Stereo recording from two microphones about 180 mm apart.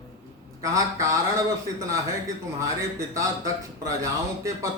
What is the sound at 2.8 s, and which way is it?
A man's voice, 15° right (ahead or behind).